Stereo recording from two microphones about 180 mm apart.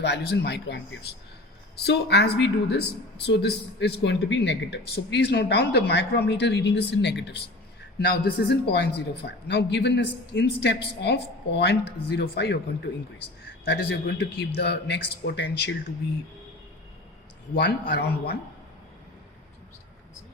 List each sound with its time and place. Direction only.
0.0 s speech: 70° left (ahead or behind)
7.9 s speech: 60° left (ahead or behind)
17.6 s speech: 60° left (ahead or behind)